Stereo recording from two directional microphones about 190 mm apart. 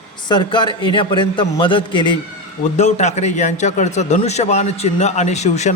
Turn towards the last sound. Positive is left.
turn(degrees=35)  # may be behind; listen again after turning